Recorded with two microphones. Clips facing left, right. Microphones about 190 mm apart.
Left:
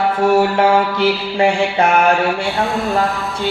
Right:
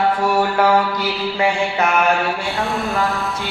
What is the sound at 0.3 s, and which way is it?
Mantra, 25° left (ahead or behind).